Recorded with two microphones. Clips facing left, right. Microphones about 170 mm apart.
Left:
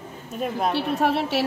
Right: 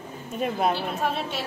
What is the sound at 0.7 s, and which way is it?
Speech, 70° left (ahead or behind).